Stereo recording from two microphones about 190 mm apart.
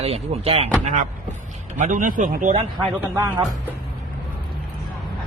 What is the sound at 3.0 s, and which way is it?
Speech, 20° right (ahead or behind).